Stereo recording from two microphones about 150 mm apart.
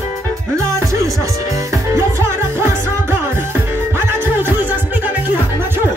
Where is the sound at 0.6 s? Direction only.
20° right (ahead or behind).